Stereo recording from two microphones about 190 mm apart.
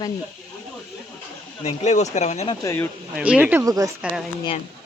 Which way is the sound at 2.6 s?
15° left (ahead or behind).